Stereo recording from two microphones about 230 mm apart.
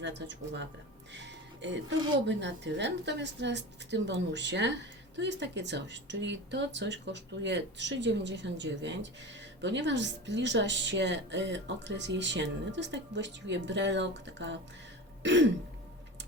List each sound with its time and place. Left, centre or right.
0.0 s a woman's voice: right
1.1 s music: right
2.2 s a woman's voice: right
15.2 s throat clearing: right